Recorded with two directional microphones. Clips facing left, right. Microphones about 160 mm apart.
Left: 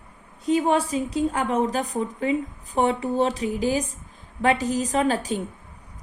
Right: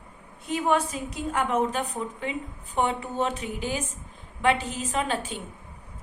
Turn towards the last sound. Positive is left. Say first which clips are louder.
# left 6 dB
turn(degrees=40)  # may be behind; listen again after turning